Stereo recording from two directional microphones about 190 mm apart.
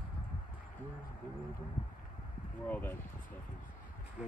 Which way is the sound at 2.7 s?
10° left (ahead or behind).